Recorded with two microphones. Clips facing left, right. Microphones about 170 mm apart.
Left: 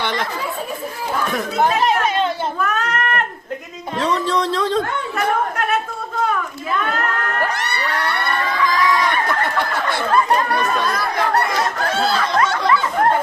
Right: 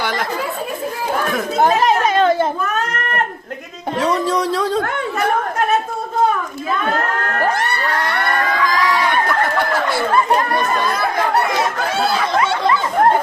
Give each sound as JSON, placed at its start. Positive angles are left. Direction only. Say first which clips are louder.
{"t": 1.6, "sound": "chatter", "louder": "right 3 dB", "side_deg": -45}
{"t": 4.0, "sound": "speech", "louder": "right 1 dB", "side_deg": -10}
{"t": 12.1, "sound": "snicker", "louder": "even", "side_deg": -15}